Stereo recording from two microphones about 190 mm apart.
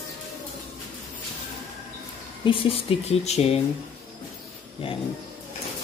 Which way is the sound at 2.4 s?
30° left (ahead or behind).